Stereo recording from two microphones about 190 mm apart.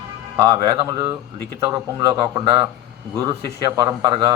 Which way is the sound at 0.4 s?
25° right (ahead or behind).